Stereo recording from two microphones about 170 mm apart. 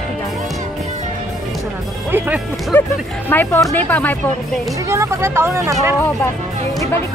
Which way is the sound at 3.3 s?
10° left (ahead or behind).